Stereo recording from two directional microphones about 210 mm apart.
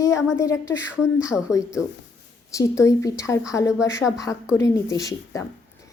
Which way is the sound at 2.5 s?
15° left (ahead or behind).